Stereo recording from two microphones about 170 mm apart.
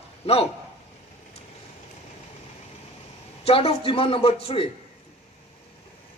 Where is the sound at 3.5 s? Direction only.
35° left (ahead or behind).